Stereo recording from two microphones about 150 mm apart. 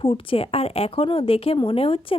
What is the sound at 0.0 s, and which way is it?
Speech, 35° left (ahead or behind).